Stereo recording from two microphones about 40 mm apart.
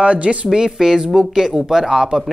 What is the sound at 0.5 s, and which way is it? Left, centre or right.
Speech, centre.